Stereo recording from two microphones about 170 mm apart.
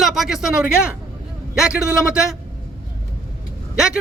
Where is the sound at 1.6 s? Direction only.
5° right (ahead or behind).